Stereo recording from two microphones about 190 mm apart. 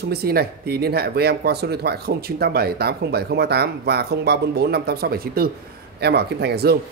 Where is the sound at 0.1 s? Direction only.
55° right (ahead or behind).